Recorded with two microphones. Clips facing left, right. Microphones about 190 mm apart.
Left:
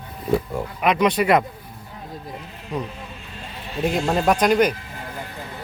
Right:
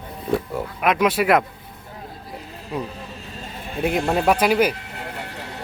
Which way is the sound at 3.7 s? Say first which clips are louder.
Even; 60° right (ahead or behind).